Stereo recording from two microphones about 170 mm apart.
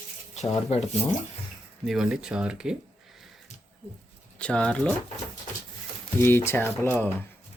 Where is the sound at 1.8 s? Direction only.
Centre (ahead or behind).